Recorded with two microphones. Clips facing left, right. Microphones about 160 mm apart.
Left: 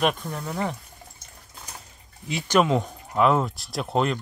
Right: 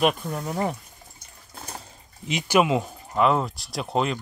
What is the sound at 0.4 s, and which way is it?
Speech, 15° right (ahead or behind).